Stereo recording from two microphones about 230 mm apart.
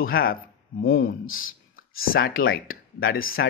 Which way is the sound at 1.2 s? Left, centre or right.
Left.